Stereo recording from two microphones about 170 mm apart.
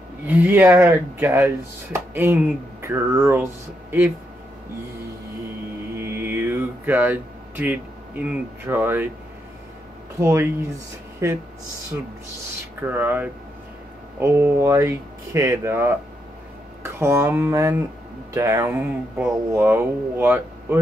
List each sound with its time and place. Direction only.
0.3 s speech: 10° right (ahead or behind)
5.9 s a sound: 15° right (ahead or behind)
10.1 s speech: 15° right (ahead or behind)
12.8 s speech: 10° right (ahead or behind)